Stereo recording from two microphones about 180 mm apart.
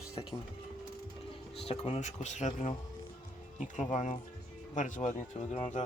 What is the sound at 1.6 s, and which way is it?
Speech, 35° left (ahead or behind).